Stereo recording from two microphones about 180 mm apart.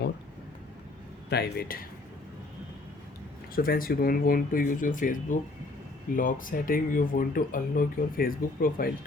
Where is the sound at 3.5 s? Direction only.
55° left (ahead or behind).